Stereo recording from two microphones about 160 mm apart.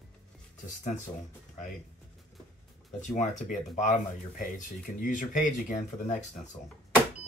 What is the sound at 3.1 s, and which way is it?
Speech, 50° left (ahead or behind).